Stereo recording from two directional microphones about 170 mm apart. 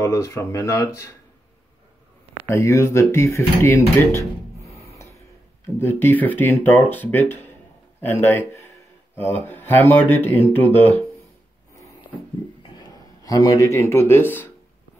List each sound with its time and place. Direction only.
0.0 s speech: 15° left (ahead or behind)
2.4 s speech: 15° left (ahead or behind)
12.6 s speech: 25° left (ahead or behind)